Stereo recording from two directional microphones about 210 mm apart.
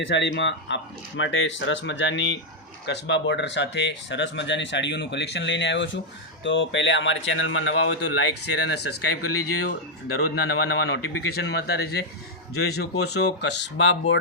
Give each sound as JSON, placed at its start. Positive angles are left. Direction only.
{"t": 0.0, "sound": "speech", "side_deg": 60}
{"t": 8.6, "sound": "a man's voice", "side_deg": 50}
{"t": 10.2, "sound": "a man's voice", "side_deg": 50}